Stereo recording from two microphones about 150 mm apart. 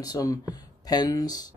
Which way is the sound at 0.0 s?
25° left (ahead or behind).